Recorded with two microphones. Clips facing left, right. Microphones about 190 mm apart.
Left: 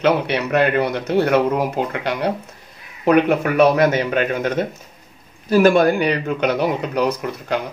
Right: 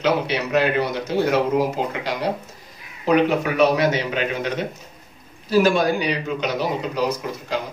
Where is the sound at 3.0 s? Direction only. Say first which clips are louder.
Left 3 dB; 55° left (ahead or behind).